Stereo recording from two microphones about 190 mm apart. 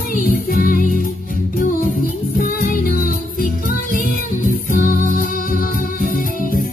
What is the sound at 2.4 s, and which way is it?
Music, 45° left (ahead or behind).